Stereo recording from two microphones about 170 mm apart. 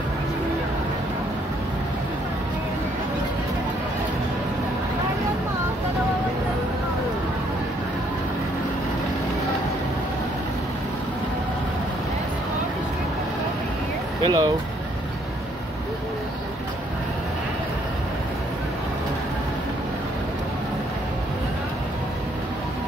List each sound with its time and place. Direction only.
14.2 s vehicle: 25° right (ahead or behind)